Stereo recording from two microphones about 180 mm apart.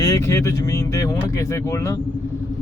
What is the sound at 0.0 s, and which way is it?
Speech, 15° left (ahead or behind).